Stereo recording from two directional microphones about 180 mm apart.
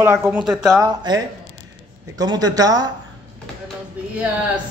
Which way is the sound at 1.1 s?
25° right (ahead or behind).